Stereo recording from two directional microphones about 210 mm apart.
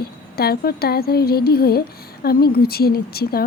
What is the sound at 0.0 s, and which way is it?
Speech, 45° left (ahead or behind).